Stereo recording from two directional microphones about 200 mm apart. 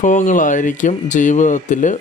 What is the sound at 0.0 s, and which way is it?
Speech, 40° left (ahead or behind).